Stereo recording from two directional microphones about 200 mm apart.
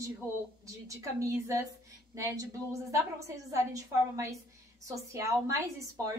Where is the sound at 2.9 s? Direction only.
15° right (ahead or behind).